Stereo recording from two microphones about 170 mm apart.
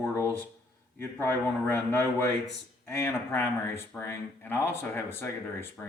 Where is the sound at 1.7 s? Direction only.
10° left (ahead or behind).